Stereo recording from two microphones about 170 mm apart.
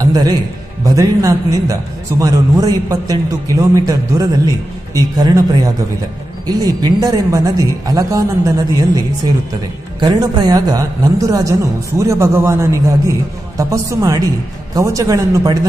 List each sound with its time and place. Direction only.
0.0 s a man's voice: 20° right (ahead or behind)